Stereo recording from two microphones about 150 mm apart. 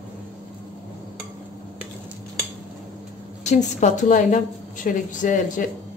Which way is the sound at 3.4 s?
50° left (ahead or behind).